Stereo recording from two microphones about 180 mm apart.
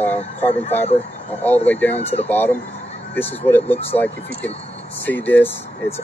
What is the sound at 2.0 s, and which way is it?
Speech, 35° left (ahead or behind).